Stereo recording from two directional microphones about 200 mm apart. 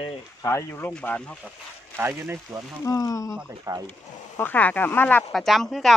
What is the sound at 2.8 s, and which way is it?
Speech, 15° left (ahead or behind).